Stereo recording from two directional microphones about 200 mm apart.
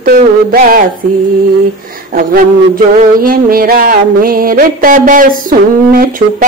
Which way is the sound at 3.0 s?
45° right (ahead or behind).